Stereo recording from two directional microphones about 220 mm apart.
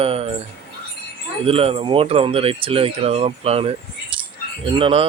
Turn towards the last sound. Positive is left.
turn(degrees=-25)  # may be behind; listen again after turning